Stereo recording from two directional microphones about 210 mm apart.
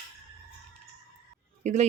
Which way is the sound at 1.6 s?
35° right (ahead or behind).